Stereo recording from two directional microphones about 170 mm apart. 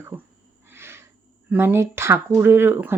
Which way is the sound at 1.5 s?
10° right (ahead or behind).